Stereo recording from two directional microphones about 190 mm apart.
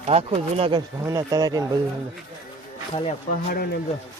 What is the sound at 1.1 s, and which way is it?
Speech, 20° right (ahead or behind).